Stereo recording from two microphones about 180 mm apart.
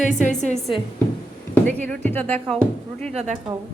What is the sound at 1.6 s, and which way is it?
Speech, 10° left (ahead or behind).